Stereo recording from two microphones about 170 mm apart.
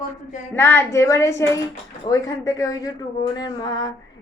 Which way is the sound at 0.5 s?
15° left (ahead or behind).